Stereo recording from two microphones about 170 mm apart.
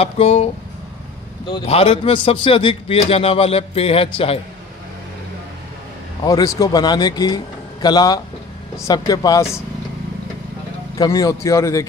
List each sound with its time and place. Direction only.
0.0 s a man's voice: 40° left (ahead or behind)
1.5 s a man's voice: 30° left (ahead or behind)
6.2 s speech: 20° left (ahead or behind)
11.0 s speech: 20° left (ahead or behind)